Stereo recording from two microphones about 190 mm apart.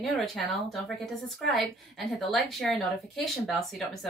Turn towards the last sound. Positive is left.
turn(degrees=0)  # may be behind; listen again after turning